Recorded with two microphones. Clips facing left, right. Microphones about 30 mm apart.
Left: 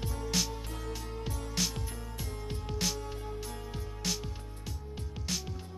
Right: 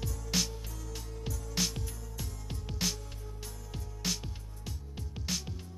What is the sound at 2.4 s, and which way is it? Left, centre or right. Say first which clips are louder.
Music: left 4 dB; left.